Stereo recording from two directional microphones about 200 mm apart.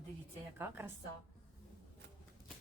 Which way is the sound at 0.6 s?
10° right (ahead or behind).